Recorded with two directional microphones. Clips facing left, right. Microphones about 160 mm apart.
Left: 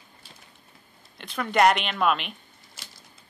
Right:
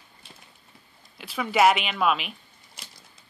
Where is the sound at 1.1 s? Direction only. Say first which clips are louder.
Even; 5° right (ahead or behind).